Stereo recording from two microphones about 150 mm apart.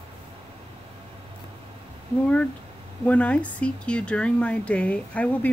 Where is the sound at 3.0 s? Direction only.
10° left (ahead or behind).